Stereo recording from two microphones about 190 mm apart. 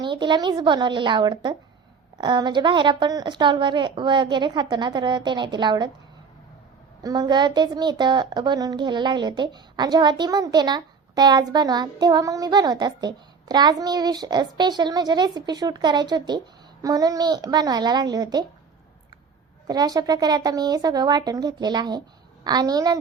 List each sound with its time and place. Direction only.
0.0 s a child's voice: 25° right (ahead or behind)
7.0 s a child's voice: 20° right (ahead or behind)
19.6 s a child's voice: 20° right (ahead or behind)